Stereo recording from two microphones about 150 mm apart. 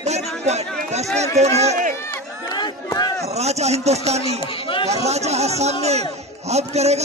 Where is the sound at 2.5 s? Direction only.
30° left (ahead or behind).